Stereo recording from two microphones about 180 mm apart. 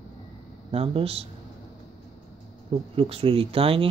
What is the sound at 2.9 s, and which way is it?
Speech, 30° right (ahead or behind).